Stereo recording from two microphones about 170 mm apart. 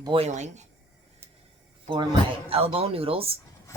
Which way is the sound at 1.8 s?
30° right (ahead or behind).